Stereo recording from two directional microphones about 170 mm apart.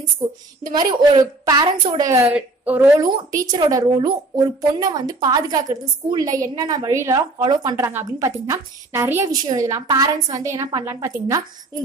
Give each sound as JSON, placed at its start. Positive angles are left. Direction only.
{"t": 0.2, "sound": "a woman's voice", "side_deg": -25}
{"t": 2.3, "sound": "a woman's voice", "side_deg": -10}
{"t": 3.0, "sound": "a woman's voice", "side_deg": -20}